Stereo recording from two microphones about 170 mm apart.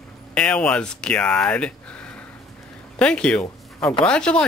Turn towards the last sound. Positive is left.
turn(degrees=5)  # may be behind; listen again after turning